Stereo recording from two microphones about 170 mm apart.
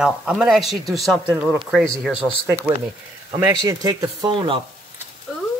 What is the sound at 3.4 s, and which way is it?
Speech, 20° right (ahead or behind).